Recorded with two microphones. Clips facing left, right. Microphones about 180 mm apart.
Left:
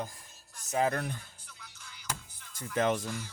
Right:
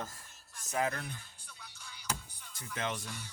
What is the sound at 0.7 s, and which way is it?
Speech, 30° left (ahead or behind).